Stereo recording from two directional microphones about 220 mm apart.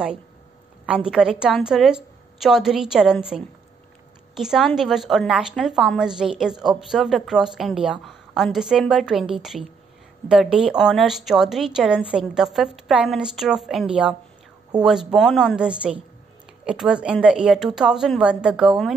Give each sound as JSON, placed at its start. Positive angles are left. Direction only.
{"t": 0.8, "sound": "a woman's voice", "side_deg": -5}